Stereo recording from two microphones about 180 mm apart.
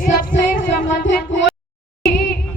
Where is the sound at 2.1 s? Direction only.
55° left (ahead or behind).